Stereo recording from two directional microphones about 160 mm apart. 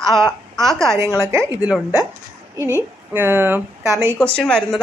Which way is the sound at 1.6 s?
10° right (ahead or behind).